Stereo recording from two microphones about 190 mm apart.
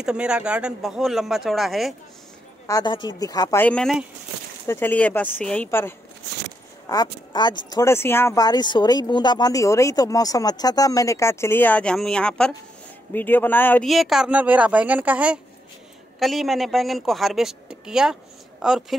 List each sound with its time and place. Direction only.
0.0 s a woman's voice: 5° right (ahead or behind)
2.6 s speech: 20° left (ahead or behind)
6.9 s speech: 20° left (ahead or behind)
13.8 s a woman's voice: centre (ahead or behind)